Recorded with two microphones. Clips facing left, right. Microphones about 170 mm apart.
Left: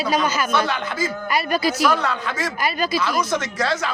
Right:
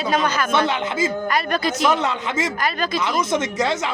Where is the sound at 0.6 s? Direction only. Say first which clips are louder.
Right 3 dB; 25° right (ahead or behind).